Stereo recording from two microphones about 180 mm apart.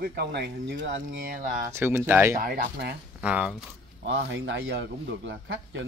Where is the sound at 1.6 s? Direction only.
15° right (ahead or behind).